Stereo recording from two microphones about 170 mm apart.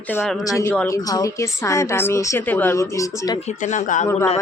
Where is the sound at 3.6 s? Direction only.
50° left (ahead or behind).